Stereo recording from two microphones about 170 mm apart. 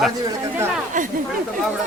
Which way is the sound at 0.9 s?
50° right (ahead or behind).